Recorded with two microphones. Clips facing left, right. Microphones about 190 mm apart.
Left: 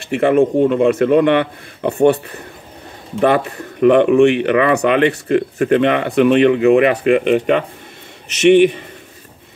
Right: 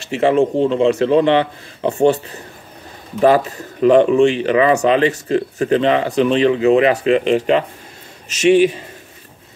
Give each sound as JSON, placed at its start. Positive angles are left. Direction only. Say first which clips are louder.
{"t": 0.0, "sound": "speech", "louder": "left 1 dB", "side_deg": 55}
{"t": 3.4, "sound": "speech", "louder": "left 1 dB", "side_deg": 60}